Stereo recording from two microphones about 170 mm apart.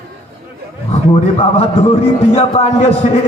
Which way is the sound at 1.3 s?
35° left (ahead or behind).